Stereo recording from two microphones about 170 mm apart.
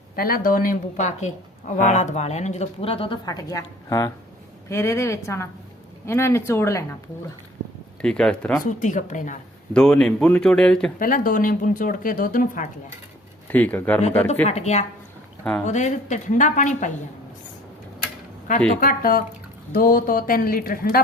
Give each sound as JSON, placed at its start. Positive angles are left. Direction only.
{"t": 0.2, "sound": "a woman's voice", "side_deg": 60}
{"t": 3.2, "sound": "a woman's voice", "side_deg": 20}
{"t": 8.0, "sound": "speech", "side_deg": 5}
{"t": 8.6, "sound": "a woman's voice", "side_deg": 50}
{"t": 9.7, "sound": "speech", "side_deg": 5}
{"t": 11.0, "sound": "a woman's voice", "side_deg": 55}
{"t": 13.5, "sound": "a woman's voice", "side_deg": 10}
{"t": 14.4, "sound": "a woman's voice", "side_deg": 40}
{"t": 18.8, "sound": "speech", "side_deg": 55}